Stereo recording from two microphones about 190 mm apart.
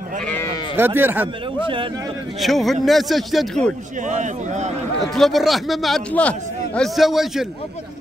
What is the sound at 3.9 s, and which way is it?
Speech, 40° right (ahead or behind).